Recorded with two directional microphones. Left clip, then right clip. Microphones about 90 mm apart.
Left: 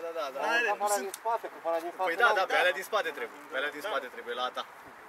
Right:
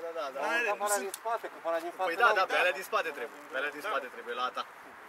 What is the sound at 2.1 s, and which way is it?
Speech, 5° left (ahead or behind).